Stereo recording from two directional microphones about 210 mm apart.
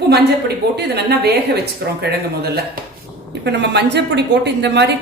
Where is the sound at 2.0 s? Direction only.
50° right (ahead or behind).